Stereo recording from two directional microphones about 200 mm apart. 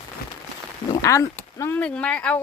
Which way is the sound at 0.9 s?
15° left (ahead or behind).